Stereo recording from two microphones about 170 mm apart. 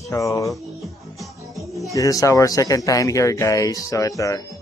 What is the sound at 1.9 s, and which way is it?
Speech, 20° left (ahead or behind).